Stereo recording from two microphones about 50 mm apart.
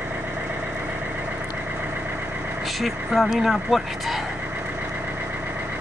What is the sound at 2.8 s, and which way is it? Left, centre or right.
Speech, centre.